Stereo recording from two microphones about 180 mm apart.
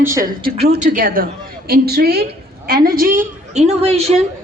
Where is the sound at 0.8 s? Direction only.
50° right (ahead or behind).